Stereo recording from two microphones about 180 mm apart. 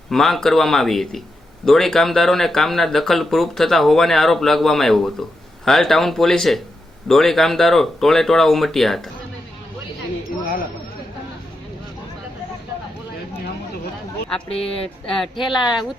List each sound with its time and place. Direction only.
0.1 s speech: centre (ahead or behind)
14.5 s speech: 35° left (ahead or behind)
15.0 s speech: centre (ahead or behind)